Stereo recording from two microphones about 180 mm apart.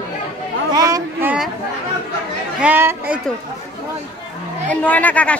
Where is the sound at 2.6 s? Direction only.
10° right (ahead or behind).